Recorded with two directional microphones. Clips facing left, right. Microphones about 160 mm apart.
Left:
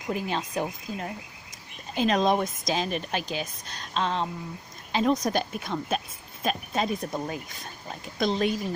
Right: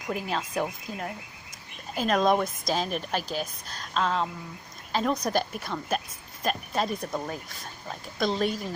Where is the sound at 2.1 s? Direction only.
20° left (ahead or behind).